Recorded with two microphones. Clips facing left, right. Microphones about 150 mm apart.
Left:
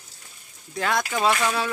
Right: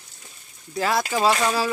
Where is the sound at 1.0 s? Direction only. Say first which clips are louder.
Right 2 dB; 30° right (ahead or behind).